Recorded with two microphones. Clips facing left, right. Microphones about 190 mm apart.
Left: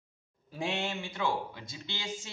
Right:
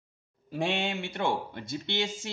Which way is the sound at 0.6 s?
75° right (ahead or behind).